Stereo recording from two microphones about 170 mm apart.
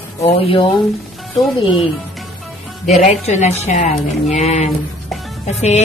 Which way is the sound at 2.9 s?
40° left (ahead or behind).